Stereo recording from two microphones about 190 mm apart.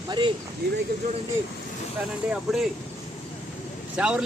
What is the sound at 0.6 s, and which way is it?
Speech, 60° right (ahead or behind).